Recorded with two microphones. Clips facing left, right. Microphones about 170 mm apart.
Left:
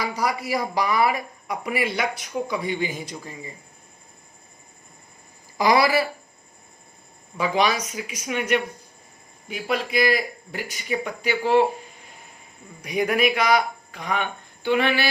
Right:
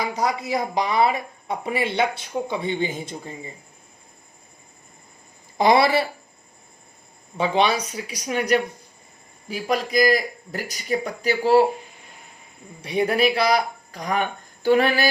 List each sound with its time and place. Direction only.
0.0 s speech: 20° right (ahead or behind)
5.5 s speech: 25° right (ahead or behind)
7.3 s a man's voice: 30° right (ahead or behind)
12.8 s speech: 30° right (ahead or behind)